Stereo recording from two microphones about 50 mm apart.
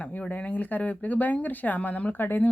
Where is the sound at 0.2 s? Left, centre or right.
Left.